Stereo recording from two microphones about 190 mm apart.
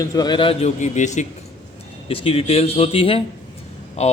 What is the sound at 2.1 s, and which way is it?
A man's voice, 30° left (ahead or behind).